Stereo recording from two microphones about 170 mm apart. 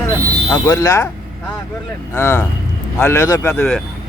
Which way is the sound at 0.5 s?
20° left (ahead or behind).